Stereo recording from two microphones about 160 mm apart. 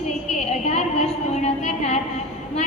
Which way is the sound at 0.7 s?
45° left (ahead or behind).